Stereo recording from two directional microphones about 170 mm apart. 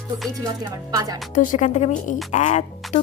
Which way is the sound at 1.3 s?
50° left (ahead or behind).